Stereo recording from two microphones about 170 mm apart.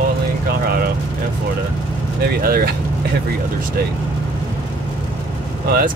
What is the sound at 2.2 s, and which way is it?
Speech, 65° right (ahead or behind).